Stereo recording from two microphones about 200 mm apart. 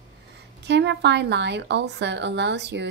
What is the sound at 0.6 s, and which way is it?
Speech, 60° right (ahead or behind).